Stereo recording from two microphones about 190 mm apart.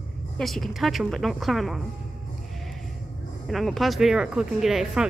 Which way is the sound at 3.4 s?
Centre (ahead or behind).